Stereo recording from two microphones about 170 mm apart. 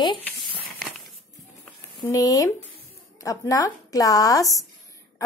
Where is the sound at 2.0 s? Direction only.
20° left (ahead or behind).